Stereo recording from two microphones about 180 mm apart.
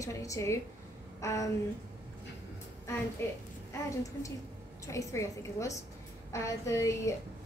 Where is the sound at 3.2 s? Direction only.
15° left (ahead or behind).